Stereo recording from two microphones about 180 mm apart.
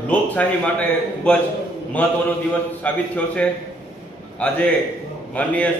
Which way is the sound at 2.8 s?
10° left (ahead or behind).